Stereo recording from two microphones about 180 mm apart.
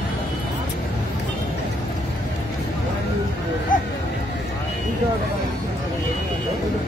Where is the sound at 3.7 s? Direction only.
50° left (ahead or behind).